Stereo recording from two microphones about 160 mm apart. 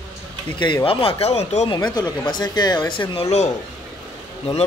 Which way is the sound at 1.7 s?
25° left (ahead or behind).